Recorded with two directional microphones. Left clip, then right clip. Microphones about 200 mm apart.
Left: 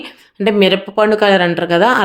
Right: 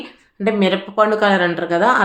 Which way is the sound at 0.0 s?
45° left (ahead or behind).